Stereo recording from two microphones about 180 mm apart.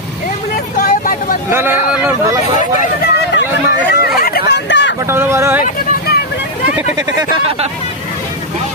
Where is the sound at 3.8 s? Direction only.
60° left (ahead or behind); by 5.0 s 80° left.